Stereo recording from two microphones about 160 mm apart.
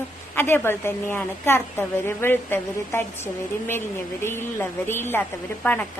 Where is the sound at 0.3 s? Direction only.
15° left (ahead or behind).